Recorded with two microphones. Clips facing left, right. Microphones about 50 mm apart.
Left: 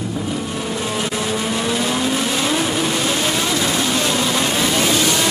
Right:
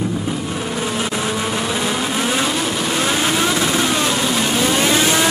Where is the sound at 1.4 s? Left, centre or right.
Centre.